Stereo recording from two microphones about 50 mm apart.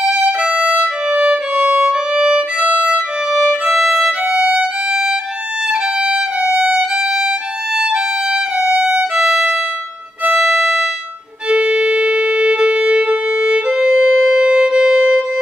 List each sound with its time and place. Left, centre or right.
0.4 s violin: right
3.4 s violin: centre
4.0 s violin: right
9.1 s violin: centre
10.3 s music: centre
11.4 s music: right